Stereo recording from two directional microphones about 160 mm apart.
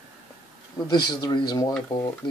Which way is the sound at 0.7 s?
25° left (ahead or behind).